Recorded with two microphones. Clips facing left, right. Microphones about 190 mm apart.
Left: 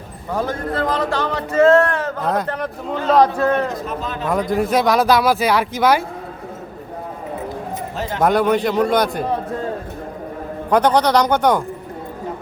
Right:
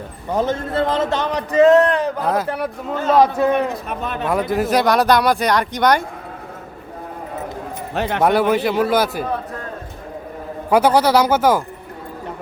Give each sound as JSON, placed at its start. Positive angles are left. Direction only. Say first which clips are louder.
{"t": 0.3, "sound": "a man's voice", "louder": "right 2 dB", "side_deg": -20}
{"t": 2.2, "sound": "speech", "louder": "right 1 dB", "side_deg": -5}
{"t": 3.7, "sound": "a man's voice", "louder": "even", "side_deg": -60}
{"t": 4.3, "sound": "speech", "louder": "even", "side_deg": -5}
{"t": 7.9, "sound": "speech", "louder": "right 6 dB", "side_deg": -65}
{"t": 8.2, "sound": "speech", "louder": "left 1 dB", "side_deg": -5}
{"t": 10.7, "sound": "speech", "louder": "right 1 dB", "side_deg": -5}